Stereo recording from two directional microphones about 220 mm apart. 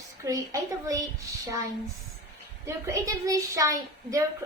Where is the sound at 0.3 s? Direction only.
15° right (ahead or behind).